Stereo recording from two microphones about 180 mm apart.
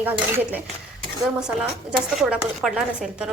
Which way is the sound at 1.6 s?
5° right (ahead or behind).